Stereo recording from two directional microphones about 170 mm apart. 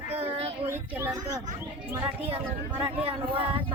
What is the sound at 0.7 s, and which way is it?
Speech, 15° right (ahead or behind).